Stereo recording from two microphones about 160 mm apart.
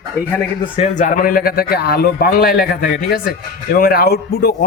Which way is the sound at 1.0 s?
55° left (ahead or behind).